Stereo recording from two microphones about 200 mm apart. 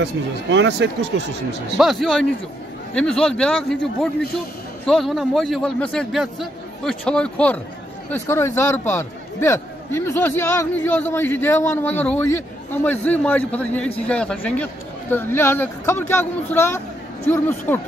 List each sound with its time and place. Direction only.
0.0 s speech: 60° right (ahead or behind)
1.8 s a man's voice: centre (ahead or behind)
4.8 s a man's voice: centre (ahead or behind)